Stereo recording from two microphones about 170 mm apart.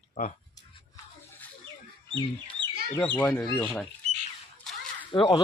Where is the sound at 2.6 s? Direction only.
30° right (ahead or behind).